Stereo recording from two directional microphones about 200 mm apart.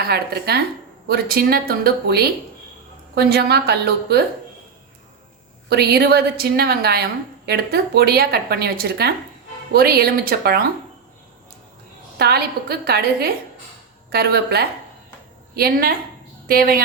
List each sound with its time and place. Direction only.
0.1 s a woman's voice: 55° right (ahead or behind)
5.6 s a woman's voice: 55° right (ahead or behind)
12.2 s a woman's voice: 50° right (ahead or behind)